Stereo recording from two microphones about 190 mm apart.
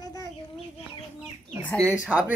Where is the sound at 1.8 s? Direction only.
5° right (ahead or behind).